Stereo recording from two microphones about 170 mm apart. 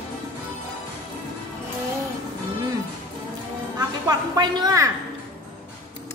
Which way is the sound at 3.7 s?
25° right (ahead or behind).